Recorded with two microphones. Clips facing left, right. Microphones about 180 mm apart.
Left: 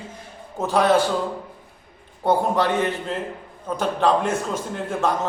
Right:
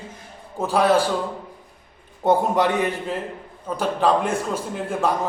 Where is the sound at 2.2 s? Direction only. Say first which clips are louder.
Right 1 dB; 15° right (ahead or behind).